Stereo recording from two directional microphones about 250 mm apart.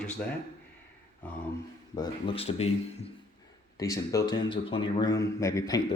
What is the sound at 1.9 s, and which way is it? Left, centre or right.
Speech, centre.